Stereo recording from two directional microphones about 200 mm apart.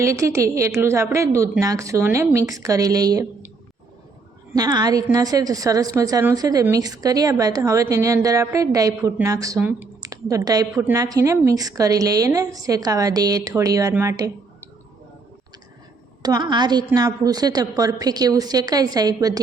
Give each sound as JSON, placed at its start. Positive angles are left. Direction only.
{"t": 0.0, "sound": "a woman's voice", "side_deg": -15}
{"t": 4.5, "sound": "a woman's voice", "side_deg": -20}
{"t": 16.2, "sound": "a woman's voice", "side_deg": -20}